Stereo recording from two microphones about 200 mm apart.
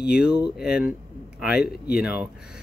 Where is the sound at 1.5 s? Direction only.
50° left (ahead or behind).